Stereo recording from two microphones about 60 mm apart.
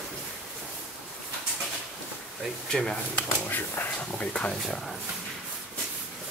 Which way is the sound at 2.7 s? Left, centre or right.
Centre.